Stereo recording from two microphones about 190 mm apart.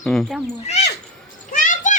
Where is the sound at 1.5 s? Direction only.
45° left (ahead or behind).